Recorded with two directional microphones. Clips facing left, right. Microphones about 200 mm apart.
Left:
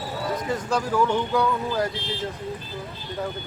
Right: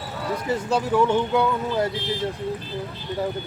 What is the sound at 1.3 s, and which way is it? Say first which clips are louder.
Speech: right 1 dB; 25° right (ahead or behind).